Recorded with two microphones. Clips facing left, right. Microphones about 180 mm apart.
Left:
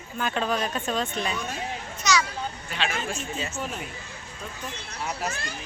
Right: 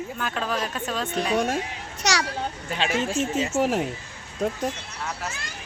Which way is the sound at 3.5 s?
80° right.